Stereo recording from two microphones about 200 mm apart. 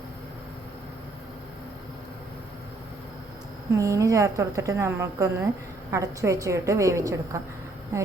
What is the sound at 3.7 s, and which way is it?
A woman's voice, 15° right (ahead or behind).